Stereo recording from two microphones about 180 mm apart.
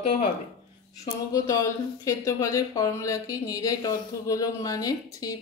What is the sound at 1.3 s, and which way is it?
Speech, 20° left (ahead or behind).